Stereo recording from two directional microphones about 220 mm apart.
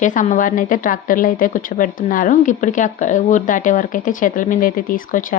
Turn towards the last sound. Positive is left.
turn(degrees=40)  # may be behind; listen again after turning